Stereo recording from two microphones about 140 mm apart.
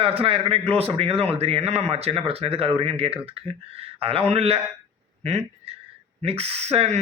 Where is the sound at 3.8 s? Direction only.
45° right (ahead or behind).